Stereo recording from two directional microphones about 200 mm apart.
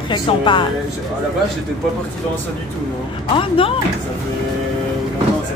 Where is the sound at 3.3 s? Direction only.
25° left (ahead or behind).